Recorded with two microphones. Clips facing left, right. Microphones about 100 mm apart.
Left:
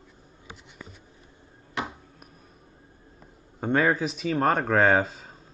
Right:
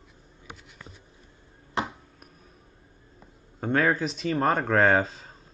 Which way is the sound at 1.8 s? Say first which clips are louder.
Right 2 dB; 30° right (ahead or behind).